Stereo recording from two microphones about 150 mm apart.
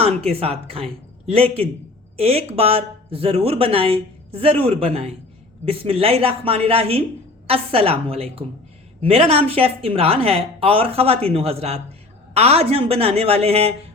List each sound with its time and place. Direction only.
0.0 s speech: 40° right (ahead or behind)